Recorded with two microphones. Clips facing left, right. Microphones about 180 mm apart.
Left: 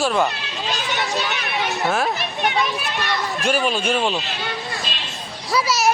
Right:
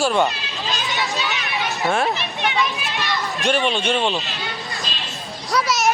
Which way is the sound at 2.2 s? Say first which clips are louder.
Left 1 dB; 40° left (ahead or behind).